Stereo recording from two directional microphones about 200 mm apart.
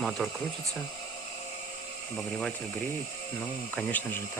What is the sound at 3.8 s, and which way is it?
Speech, 5° left (ahead or behind).